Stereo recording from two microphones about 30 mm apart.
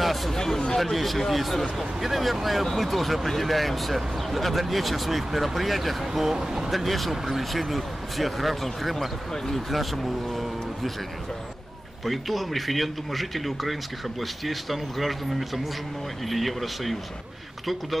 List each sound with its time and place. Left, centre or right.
0.0 s a sound: centre
0.3 s a sound: centre
0.7 s speech: centre
6.2 s speech: centre
6.7 s speech: centre
8.6 s speech: centre
12.0 s speech: centre